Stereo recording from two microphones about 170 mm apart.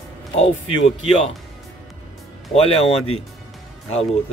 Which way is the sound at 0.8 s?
35° left (ahead or behind).